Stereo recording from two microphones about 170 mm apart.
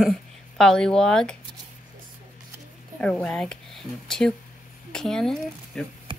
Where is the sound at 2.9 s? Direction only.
5° left (ahead or behind).